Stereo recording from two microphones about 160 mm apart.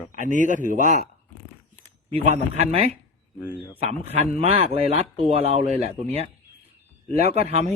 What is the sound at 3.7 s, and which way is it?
A man's voice, 40° right (ahead or behind).